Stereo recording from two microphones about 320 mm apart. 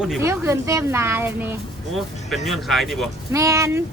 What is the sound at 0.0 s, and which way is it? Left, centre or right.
Speech, centre.